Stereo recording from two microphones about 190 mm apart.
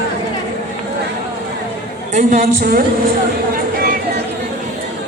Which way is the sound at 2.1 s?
40° right (ahead or behind).